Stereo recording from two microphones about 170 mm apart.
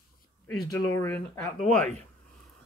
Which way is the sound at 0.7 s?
20° left (ahead or behind).